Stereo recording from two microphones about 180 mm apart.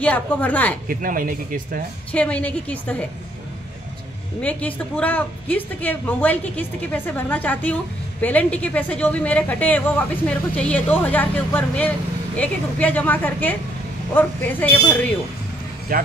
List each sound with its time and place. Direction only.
0.0 s a woman's voice: 10° left (ahead or behind)
0.8 s speech: 50° right (ahead or behind)
2.1 s a woman's voice: 5° left (ahead or behind)
4.4 s a woman's voice: 5° left (ahead or behind)
15.9 s speech: 50° right (ahead or behind)